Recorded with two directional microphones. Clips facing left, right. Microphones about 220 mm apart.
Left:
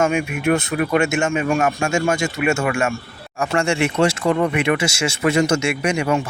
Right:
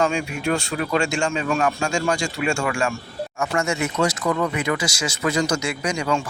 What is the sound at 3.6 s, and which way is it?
Speech, 30° left (ahead or behind).